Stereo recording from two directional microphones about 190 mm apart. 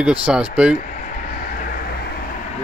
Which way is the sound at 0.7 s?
40° left (ahead or behind).